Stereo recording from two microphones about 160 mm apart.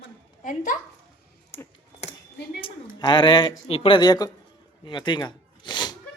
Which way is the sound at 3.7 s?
35° left (ahead or behind).